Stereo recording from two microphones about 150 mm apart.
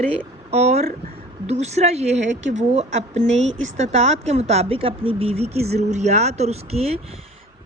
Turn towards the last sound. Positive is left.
turn(degrees=-45)  # may be behind; listen again after turning